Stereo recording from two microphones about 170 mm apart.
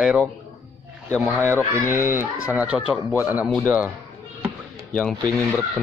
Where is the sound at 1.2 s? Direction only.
15° right (ahead or behind).